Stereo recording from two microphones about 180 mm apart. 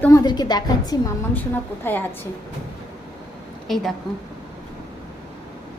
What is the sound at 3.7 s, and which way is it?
Speech, centre (ahead or behind).